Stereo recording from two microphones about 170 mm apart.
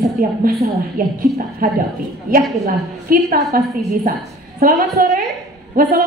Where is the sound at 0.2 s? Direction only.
60° right (ahead or behind).